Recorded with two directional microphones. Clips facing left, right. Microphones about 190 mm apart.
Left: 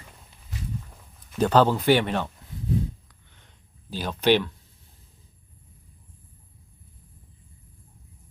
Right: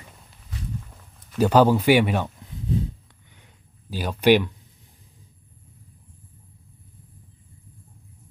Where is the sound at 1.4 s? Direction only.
10° right (ahead or behind).